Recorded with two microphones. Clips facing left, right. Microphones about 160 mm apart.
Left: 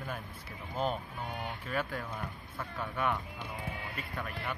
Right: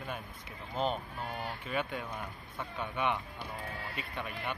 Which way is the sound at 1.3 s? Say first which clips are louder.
Even; centre (ahead or behind).